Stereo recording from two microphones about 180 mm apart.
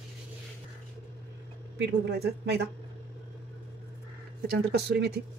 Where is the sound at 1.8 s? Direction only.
70° right (ahead or behind).